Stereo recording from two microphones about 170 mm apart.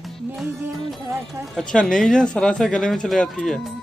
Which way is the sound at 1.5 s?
5° left (ahead or behind).